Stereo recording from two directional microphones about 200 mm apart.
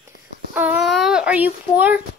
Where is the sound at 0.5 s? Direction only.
10° right (ahead or behind).